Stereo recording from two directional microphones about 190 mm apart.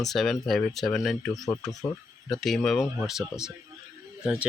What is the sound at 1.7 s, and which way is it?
Speech, 20° left (ahead or behind).